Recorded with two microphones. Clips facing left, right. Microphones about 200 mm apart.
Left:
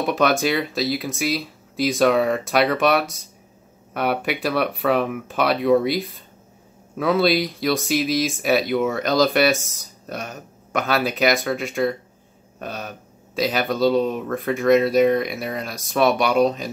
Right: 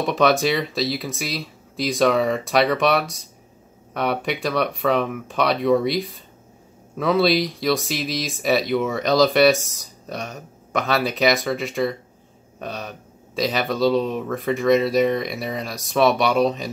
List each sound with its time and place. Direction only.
0.0 s speech: centre (ahead or behind)